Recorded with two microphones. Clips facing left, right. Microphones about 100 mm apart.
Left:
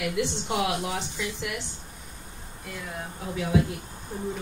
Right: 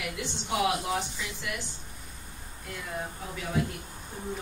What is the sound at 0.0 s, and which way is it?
Speech, 65° left (ahead or behind).